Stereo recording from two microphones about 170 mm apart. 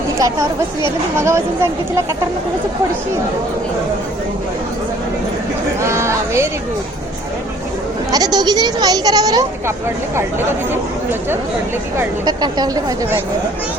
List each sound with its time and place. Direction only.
0.2 s speech: 20° right (ahead or behind)
5.8 s speech: 15° right (ahead or behind)
8.1 s speech: 25° right (ahead or behind)
11.9 s speech: 25° right (ahead or behind)